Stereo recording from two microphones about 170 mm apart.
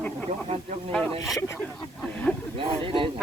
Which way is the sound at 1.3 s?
20° left (ahead or behind).